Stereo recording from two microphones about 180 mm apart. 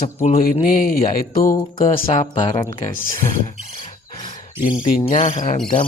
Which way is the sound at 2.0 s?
35° left (ahead or behind).